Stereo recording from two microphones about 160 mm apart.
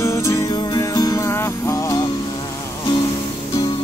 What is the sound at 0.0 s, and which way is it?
Music, 20° left (ahead or behind).